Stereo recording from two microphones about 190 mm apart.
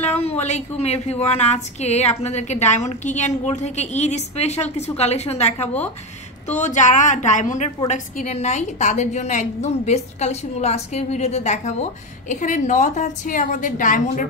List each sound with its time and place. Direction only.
0.0 s a woman's voice: 35° left (ahead or behind)